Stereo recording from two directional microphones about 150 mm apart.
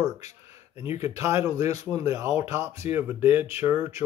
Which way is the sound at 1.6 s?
45° left (ahead or behind).